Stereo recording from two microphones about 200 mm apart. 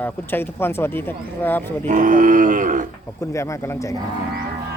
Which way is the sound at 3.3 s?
15° left (ahead or behind).